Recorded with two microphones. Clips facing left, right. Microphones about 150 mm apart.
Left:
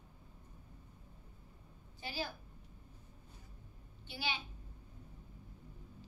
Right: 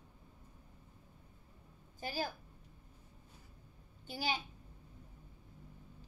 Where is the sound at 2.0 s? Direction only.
45° right (ahead or behind).